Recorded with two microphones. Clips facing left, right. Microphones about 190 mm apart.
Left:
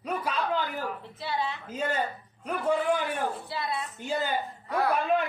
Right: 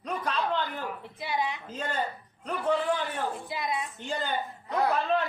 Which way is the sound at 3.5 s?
15° right (ahead or behind).